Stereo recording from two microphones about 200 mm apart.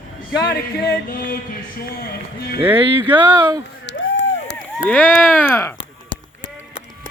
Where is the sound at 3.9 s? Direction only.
65° left (ahead or behind).